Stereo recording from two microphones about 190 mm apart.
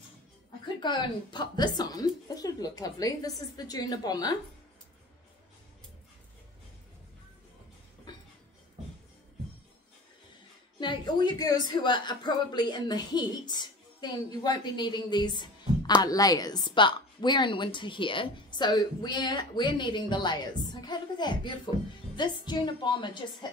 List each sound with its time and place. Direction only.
0.7 s a woman's voice: 25° left (ahead or behind)
10.8 s a woman's voice: 25° left (ahead or behind)